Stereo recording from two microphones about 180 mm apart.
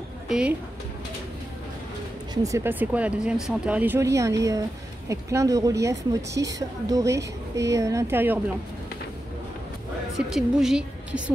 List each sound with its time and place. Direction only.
0.3 s a woman's voice: 5° right (ahead or behind)
2.3 s speech: 15° right (ahead or behind)
10.1 s a woman's voice: centre (ahead or behind)